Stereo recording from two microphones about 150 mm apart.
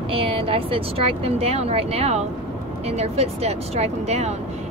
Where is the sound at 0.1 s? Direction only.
40° right (ahead or behind).